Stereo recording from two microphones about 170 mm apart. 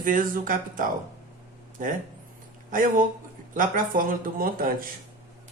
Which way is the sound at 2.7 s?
50° right (ahead or behind).